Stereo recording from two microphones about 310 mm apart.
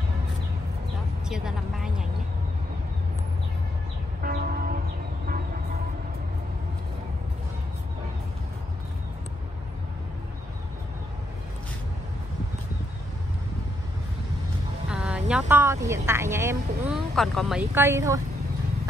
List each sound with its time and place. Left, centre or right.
1.3 s a sound: centre
4.2 s music: right
14.9 s speech: centre